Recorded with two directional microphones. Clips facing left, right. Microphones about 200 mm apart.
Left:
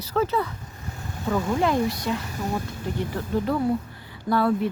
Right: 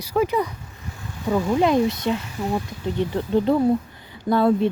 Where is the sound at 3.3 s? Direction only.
25° right (ahead or behind).